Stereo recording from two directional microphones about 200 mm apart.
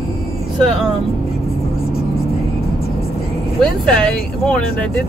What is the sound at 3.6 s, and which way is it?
Speech, 5° left (ahead or behind).